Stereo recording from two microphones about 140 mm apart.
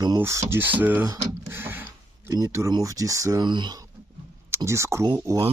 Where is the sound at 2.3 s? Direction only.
25° right (ahead or behind).